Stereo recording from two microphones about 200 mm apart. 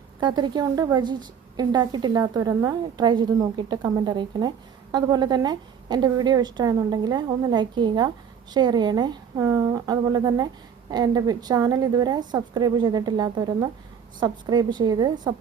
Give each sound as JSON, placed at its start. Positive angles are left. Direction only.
{"t": 0.2, "sound": "a woman's voice", "side_deg": -20}